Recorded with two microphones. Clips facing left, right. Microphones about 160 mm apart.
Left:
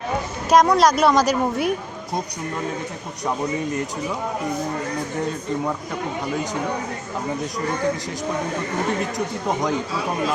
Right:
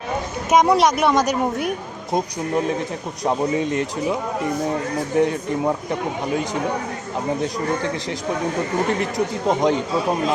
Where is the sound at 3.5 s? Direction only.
90° right.